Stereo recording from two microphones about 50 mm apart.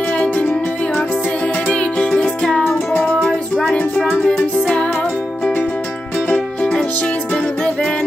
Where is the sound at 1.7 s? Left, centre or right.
Left.